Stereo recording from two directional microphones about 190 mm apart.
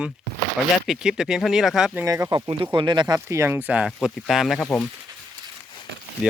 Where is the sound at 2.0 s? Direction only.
20° right (ahead or behind); by 4.9 s 10° left (ahead or behind).